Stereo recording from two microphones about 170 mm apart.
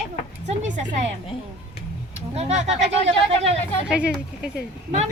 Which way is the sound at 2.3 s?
40° right (ahead or behind).